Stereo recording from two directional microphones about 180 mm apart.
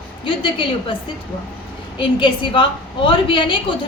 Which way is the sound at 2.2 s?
30° left (ahead or behind).